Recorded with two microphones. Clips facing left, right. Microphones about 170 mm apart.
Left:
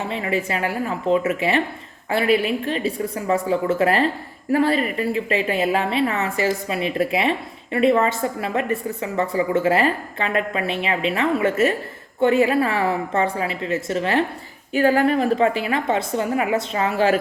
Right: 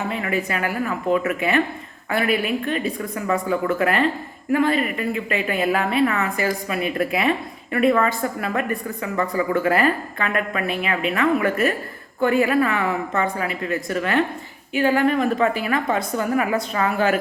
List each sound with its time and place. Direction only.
0.0 s a woman's voice: 30° left (ahead or behind)
14.7 s a woman's voice: 40° left (ahead or behind)